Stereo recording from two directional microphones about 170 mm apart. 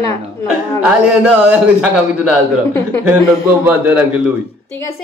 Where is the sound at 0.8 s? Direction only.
5° right (ahead or behind).